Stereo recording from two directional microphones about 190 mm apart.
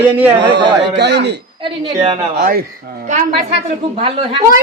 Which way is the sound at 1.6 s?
30° right (ahead or behind).